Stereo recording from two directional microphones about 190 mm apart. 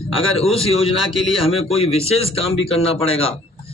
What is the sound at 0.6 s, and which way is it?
A man's voice, 30° left (ahead or behind).